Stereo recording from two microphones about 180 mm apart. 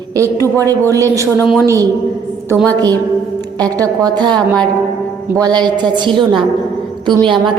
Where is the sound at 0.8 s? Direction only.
20° right (ahead or behind).